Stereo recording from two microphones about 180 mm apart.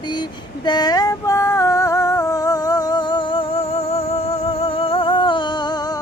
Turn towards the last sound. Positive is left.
turn(degrees=25)  # may be behind; listen again after turning